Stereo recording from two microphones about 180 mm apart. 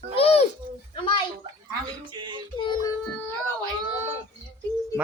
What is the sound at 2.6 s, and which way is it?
Speech, 25° left (ahead or behind).